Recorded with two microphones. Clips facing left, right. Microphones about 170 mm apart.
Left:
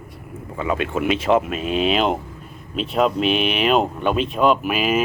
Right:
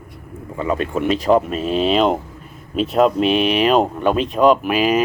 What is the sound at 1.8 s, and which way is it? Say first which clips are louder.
Speech: right 4 dB; centre (ahead or behind).